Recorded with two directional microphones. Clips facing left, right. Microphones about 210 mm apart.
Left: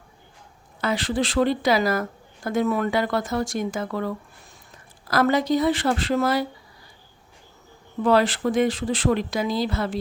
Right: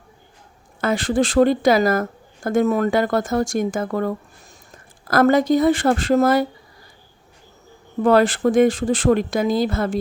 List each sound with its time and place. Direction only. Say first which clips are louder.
0.8 s a woman's voice: right 5 dB; 50° right (ahead or behind)
8.0 s a woman's voice: right 4 dB; 50° right (ahead or behind)